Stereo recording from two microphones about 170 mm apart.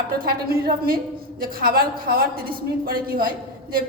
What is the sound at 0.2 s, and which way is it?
A woman's voice, 60° right (ahead or behind).